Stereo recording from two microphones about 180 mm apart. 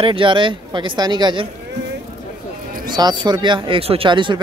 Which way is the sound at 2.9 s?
25° right (ahead or behind).